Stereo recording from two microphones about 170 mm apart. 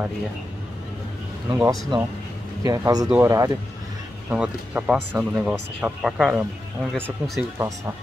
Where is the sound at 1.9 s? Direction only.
25° right (ahead or behind).